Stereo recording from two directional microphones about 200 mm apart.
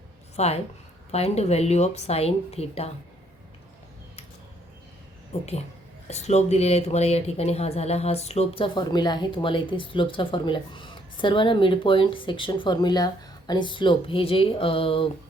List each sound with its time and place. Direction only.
0.3 s a woman's voice: 30° left (ahead or behind)
5.3 s speech: 30° left (ahead or behind)